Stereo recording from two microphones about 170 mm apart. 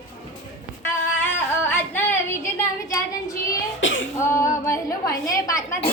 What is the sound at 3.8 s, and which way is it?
Throat clearing, 90° left.